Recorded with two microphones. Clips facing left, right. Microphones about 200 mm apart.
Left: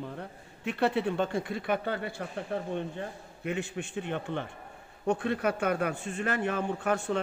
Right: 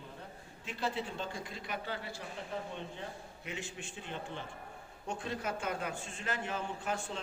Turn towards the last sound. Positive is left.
turn(degrees=65)  # may be behind; listen again after turning